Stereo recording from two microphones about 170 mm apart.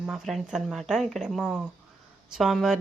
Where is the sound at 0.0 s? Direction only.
Centre (ahead or behind).